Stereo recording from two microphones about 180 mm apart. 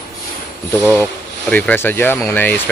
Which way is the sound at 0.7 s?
10° left (ahead or behind).